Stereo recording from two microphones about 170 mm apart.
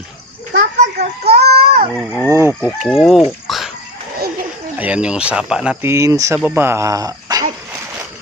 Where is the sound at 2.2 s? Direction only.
20° right (ahead or behind).